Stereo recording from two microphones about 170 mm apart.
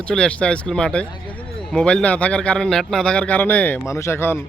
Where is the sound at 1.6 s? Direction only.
5° left (ahead or behind).